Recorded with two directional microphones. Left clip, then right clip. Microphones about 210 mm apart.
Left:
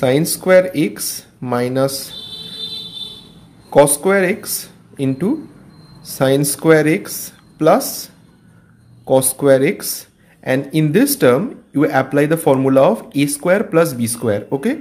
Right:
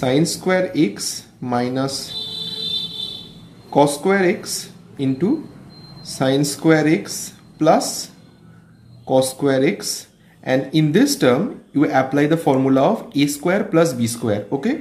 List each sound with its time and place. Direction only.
0.0 s speech: 40° left (ahead or behind)
3.7 s speech: 45° left (ahead or behind)